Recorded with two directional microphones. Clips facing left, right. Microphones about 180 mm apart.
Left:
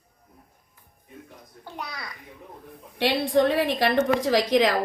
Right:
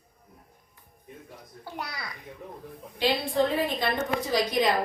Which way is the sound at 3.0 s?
80° left.